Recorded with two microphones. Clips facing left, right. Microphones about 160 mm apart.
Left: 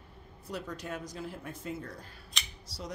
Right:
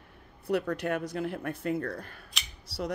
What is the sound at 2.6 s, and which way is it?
Scissors, 60° right (ahead or behind).